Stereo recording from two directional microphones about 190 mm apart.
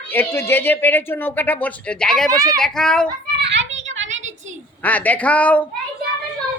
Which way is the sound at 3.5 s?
35° right (ahead or behind).